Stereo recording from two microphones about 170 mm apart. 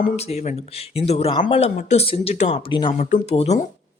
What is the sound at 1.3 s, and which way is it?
Speech, 25° left (ahead or behind).